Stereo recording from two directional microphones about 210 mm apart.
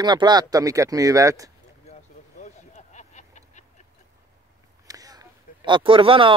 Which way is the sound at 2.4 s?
30° left (ahead or behind).